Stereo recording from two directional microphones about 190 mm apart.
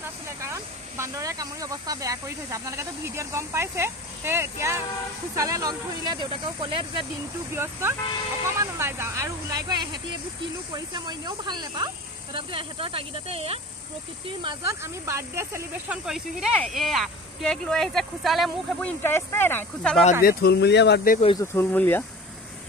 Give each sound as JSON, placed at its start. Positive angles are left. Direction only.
{"t": 0.0, "sound": "speech", "side_deg": -15}
{"t": 7.5, "sound": "speech", "side_deg": -15}
{"t": 14.4, "sound": "speech", "side_deg": -15}
{"t": 16.1, "sound": "speech", "side_deg": 0}
{"t": 20.2, "sound": "speech", "side_deg": 55}
{"t": 21.4, "sound": "speech", "side_deg": 10}